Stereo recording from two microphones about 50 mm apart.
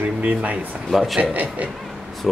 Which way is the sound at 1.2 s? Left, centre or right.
Right.